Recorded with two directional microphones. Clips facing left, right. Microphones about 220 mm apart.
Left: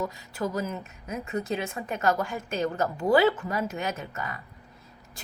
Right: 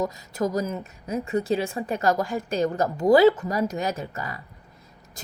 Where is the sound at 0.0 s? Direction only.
40° right (ahead or behind).